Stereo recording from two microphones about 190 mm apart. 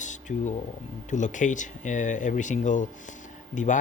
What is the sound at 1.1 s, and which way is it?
Speech, 40° left (ahead or behind).